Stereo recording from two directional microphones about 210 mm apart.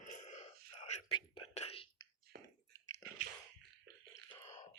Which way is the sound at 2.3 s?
50° right (ahead or behind).